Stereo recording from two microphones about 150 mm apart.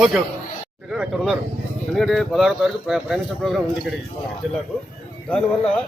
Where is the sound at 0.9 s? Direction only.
5° right (ahead or behind).